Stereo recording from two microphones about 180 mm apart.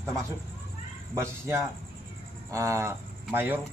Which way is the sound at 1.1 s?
15° right (ahead or behind).